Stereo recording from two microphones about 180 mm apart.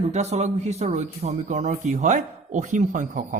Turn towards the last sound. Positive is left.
turn(degrees=-45)  # may be behind; listen again after turning